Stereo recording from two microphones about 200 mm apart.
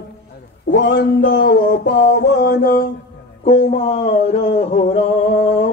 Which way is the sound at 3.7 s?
30° left (ahead or behind).